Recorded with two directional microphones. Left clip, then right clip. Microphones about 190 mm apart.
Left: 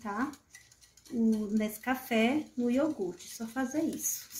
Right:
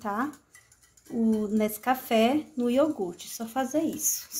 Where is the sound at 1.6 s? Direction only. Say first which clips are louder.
Right 7 dB; 30° right (ahead or behind).